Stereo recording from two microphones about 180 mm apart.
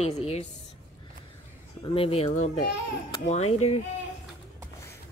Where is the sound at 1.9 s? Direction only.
35° left (ahead or behind).